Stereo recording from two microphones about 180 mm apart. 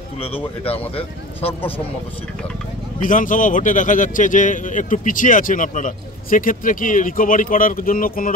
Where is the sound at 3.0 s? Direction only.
45° left (ahead or behind).